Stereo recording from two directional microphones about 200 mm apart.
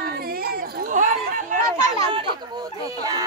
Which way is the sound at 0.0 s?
50° right (ahead or behind).